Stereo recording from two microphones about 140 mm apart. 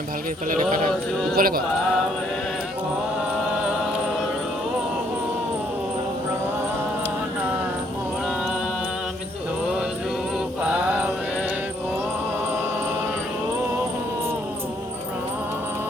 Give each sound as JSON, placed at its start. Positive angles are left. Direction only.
{"t": 0.6, "sound": "a sound", "side_deg": -70}
{"t": 1.4, "sound": "music", "side_deg": -90}
{"t": 10.6, "sound": "mantra", "side_deg": -10}